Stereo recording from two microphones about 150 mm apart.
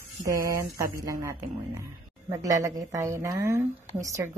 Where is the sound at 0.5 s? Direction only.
20° right (ahead or behind).